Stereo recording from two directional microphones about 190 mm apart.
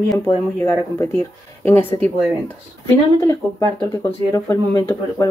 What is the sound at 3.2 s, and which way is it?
Speech, 15° left (ahead or behind).